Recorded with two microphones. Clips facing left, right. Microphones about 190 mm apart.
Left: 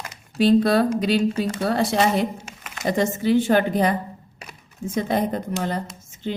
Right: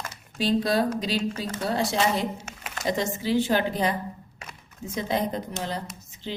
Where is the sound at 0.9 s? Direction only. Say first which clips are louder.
Left 7 dB; 60° left (ahead or behind).